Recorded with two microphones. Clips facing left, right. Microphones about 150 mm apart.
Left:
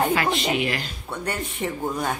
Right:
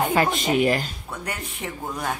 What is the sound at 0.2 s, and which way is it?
Speech, 45° right (ahead or behind).